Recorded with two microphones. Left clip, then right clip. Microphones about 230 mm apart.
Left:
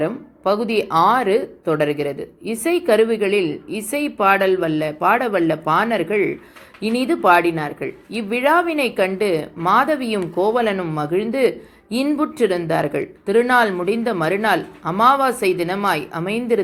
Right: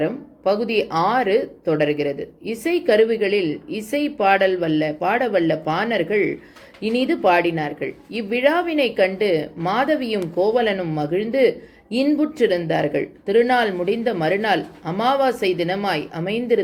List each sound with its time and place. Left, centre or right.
0.0 s speech: centre
0.9 s a woman's voice: left
1.1 s speech: centre